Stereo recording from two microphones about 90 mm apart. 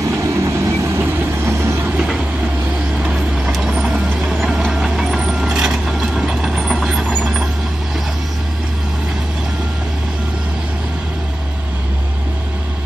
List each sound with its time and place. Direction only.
0.3 s vehicle: 35° right (ahead or behind)
3.5 s vehicle: 5° right (ahead or behind)